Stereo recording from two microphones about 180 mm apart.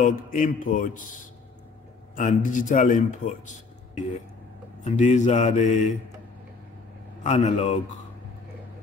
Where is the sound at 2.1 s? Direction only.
45° left (ahead or behind).